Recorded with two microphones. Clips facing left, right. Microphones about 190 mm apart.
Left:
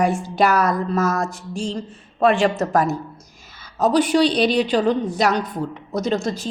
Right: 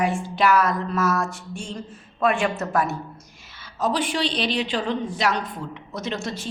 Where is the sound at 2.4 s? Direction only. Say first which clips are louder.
Left 5 dB; 35° left (ahead or behind).